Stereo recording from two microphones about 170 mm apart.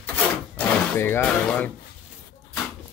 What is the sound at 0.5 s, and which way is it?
Speech, 10° left (ahead or behind).